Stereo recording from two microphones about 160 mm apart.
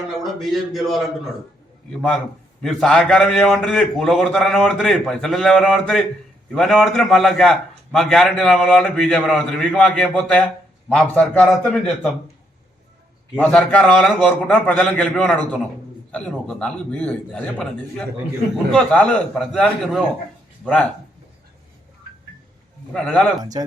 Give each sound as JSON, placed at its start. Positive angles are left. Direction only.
{"t": 0.2, "sound": "a man's voice", "side_deg": 0}
{"t": 13.4, "sound": "a man's voice", "side_deg": 5}
{"t": 22.9, "sound": "a man's voice", "side_deg": 5}
{"t": 23.4, "sound": "speech", "side_deg": -25}